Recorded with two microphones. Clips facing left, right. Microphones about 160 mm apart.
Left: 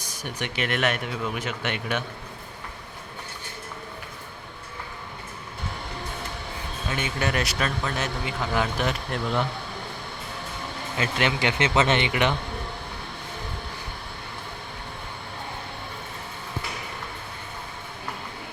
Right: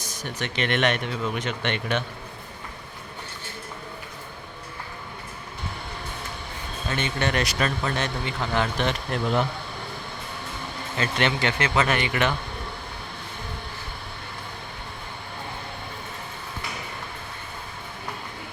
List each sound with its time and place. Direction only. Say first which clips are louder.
0.0 s speech: right 1 dB; 10° left (ahead or behind)
6.8 s a man's voice: right 1 dB; 10° left (ahead or behind)
10.9 s speech: right 1 dB; 10° left (ahead or behind)